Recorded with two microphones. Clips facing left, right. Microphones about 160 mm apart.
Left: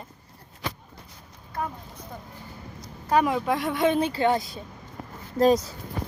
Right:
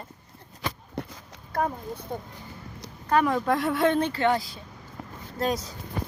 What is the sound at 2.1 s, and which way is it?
Speech, 30° right (ahead or behind).